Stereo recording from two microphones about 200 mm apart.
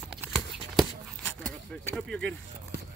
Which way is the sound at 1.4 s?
5° left (ahead or behind).